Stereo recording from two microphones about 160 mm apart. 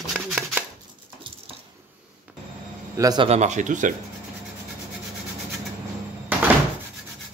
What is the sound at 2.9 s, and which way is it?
Speech, 20° right (ahead or behind).